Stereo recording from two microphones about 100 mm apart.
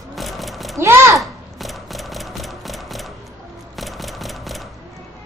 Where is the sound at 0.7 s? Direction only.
25° right (ahead or behind).